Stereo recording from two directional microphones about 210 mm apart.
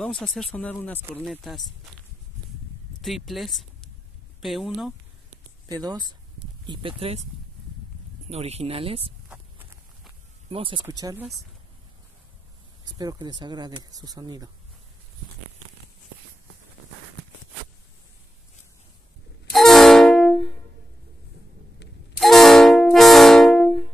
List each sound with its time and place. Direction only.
0.0 s speech: centre (ahead or behind)
3.0 s speech: centre (ahead or behind)
5.7 s speech: 20° right (ahead or behind)
8.3 s speech: 30° right (ahead or behind)
10.5 s speech: 25° right (ahead or behind)
12.8 s speech: 20° right (ahead or behind)
19.5 s music: centre (ahead or behind)
22.2 s music: centre (ahead or behind)